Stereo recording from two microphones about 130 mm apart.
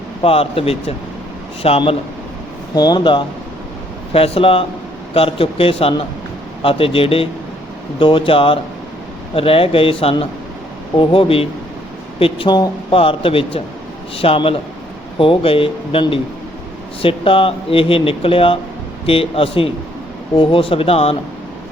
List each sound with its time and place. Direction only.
0.2 s speech: 45° left (ahead or behind)
2.7 s speech: 30° left (ahead or behind); by 21.2 s 50° left (ahead or behind)